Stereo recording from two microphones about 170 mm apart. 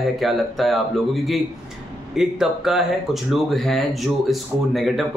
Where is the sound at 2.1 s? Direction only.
Centre (ahead or behind).